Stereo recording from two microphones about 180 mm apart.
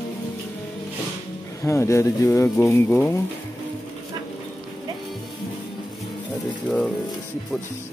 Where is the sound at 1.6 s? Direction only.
15° left (ahead or behind).